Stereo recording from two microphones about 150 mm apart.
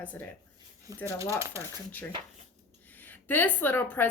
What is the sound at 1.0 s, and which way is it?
Speech, 20° right (ahead or behind).